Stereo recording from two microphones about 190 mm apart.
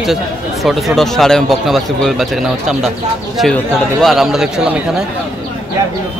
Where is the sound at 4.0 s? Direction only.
Centre (ahead or behind).